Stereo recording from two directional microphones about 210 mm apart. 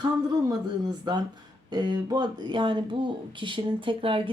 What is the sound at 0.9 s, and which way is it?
Speech, 20° right (ahead or behind).